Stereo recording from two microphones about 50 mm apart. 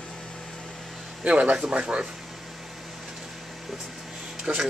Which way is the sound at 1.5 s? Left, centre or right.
Centre.